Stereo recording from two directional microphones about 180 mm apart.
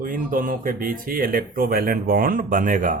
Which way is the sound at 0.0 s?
50° right (ahead or behind).